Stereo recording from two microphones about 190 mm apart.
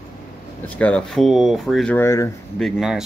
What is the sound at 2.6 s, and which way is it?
Speech, centre (ahead or behind).